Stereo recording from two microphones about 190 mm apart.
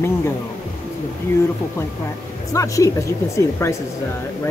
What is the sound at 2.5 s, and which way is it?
Speech, 15° left (ahead or behind).